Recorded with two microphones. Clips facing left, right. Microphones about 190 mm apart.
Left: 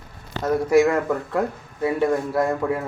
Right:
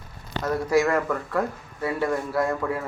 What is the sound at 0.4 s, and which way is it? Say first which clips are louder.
Speech: left 5 dB; 20° left (ahead or behind).